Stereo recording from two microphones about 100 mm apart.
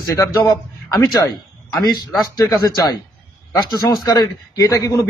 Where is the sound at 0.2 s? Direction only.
35° left (ahead or behind).